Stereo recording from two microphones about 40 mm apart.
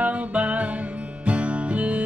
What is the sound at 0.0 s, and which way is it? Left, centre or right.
Music, right.